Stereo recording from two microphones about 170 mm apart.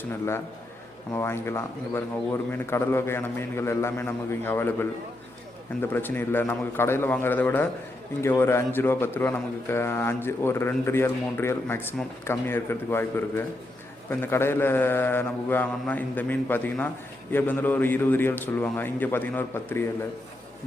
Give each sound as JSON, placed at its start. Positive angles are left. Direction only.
{"t": 0.0, "sound": "a man's voice", "side_deg": 15}